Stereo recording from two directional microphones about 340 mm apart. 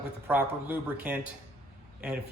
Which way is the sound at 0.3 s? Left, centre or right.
Centre.